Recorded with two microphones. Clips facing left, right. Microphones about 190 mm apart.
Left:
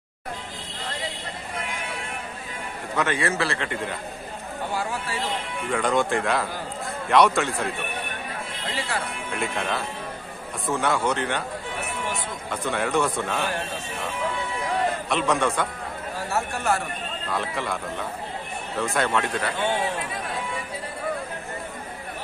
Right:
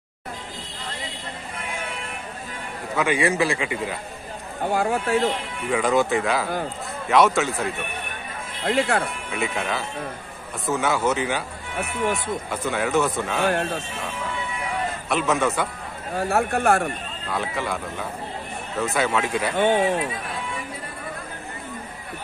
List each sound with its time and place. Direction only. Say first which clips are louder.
3.0 s a man's voice: right 4 dB; 10° right (ahead or behind)
4.6 s speech: right 7 dB; 60° right (ahead or behind)
5.0 s speech: right 9 dB; 45° right (ahead or behind)
5.7 s a man's voice: right 3 dB; 5° right (ahead or behind)
8.6 s speech: right 9 dB; 55° right (ahead or behind)
9.3 s a man's voice: even; centre (ahead or behind)
12.4 s a man's voice: left 1 dB; centre (ahead or behind)
15.0 s a man's voice: right 5 dB; 5° right (ahead or behind)
16.2 s speech: right 7 dB; 55° right (ahead or behind)
17.3 s a man's voice: right 2 dB; centre (ahead or behind)
19.5 s speech: right 8 dB; 55° right (ahead or behind)